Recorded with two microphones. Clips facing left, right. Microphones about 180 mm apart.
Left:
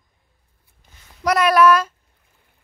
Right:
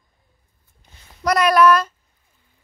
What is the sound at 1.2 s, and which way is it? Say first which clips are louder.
Speech: even; 5° left (ahead or behind).